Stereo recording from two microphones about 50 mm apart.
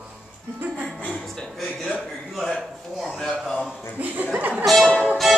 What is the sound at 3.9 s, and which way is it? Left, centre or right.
Speech, right.